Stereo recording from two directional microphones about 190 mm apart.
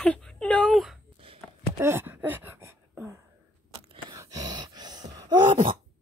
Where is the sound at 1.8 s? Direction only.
10° right (ahead or behind).